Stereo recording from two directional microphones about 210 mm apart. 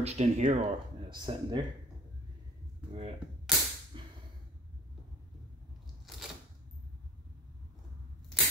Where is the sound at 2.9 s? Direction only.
30° right (ahead or behind).